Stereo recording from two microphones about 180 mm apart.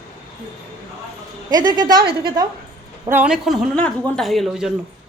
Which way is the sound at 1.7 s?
25° right (ahead or behind).